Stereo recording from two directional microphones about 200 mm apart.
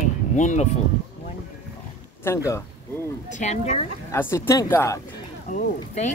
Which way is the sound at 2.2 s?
15° left (ahead or behind).